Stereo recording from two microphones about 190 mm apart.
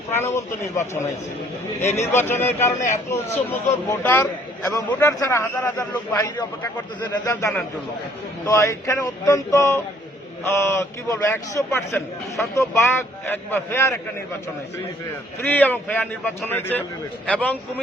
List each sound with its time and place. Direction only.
0.1 s a man's voice: 10° left (ahead or behind)
2.1 s a man's voice: 10° left (ahead or behind)
7.3 s a man's voice: 15° left (ahead or behind)
15.4 s a man's voice: 10° left (ahead or behind)